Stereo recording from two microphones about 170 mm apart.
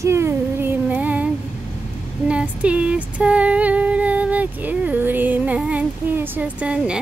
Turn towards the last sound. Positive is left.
turn(degrees=-5)  # may be behind; listen again after turning